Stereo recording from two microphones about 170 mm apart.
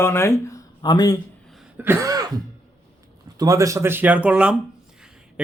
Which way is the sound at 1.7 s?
15° right (ahead or behind).